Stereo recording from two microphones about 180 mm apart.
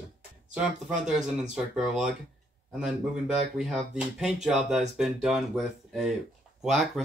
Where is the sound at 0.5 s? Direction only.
5° right (ahead or behind).